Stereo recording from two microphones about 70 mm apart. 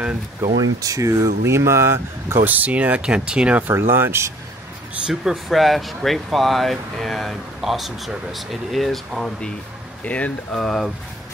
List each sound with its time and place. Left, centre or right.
0.4 s speech: right
2.4 s speech: right
3.6 s speech: right
5.0 s speech: centre
10.0 s speech: left
10.5 s speech: centre